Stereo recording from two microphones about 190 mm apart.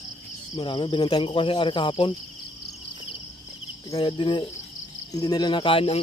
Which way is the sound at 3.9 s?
25° left (ahead or behind).